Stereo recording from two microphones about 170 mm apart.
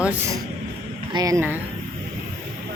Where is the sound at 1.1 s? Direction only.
20° right (ahead or behind).